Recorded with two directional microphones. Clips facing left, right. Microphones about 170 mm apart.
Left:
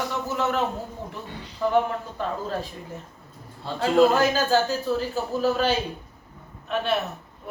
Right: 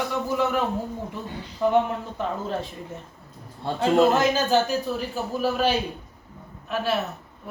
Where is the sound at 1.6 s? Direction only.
15° right (ahead or behind).